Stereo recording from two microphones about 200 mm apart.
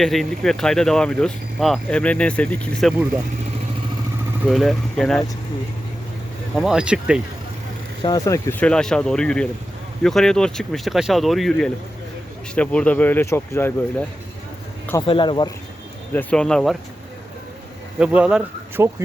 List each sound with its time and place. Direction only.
0.0 s speech: centre (ahead or behind)
4.4 s speech: centre (ahead or behind)
6.6 s speech: 5° right (ahead or behind)
8.0 s speech: 20° left (ahead or behind)
15.0 s speech: 25° left (ahead or behind)
16.1 s speech: 5° left (ahead or behind)
18.0 s speech: 5° right (ahead or behind)